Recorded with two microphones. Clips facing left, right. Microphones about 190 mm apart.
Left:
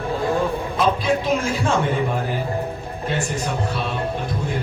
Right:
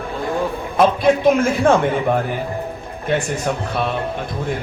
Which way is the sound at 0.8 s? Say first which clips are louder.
Right 6 dB; 55° right (ahead or behind).